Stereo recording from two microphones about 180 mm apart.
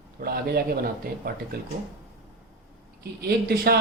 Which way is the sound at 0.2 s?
55° right (ahead or behind).